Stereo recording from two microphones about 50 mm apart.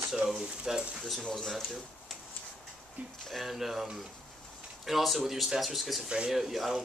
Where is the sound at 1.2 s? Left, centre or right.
Centre.